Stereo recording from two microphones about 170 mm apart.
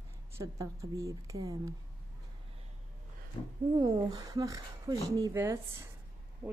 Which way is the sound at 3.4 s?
25° left (ahead or behind).